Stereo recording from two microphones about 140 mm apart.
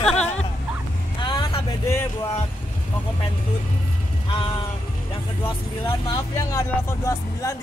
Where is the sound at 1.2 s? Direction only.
35° left (ahead or behind).